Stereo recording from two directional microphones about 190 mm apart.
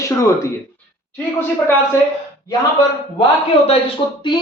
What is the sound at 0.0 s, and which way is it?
Speech, 15° left (ahead or behind).